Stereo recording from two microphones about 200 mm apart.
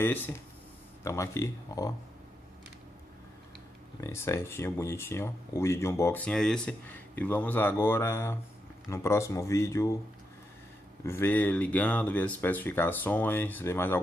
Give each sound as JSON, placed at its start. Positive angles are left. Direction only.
{"t": 0.0, "sound": "speech", "side_deg": 10}
{"t": 4.0, "sound": "speech", "side_deg": 15}
{"t": 11.1, "sound": "speech", "side_deg": 10}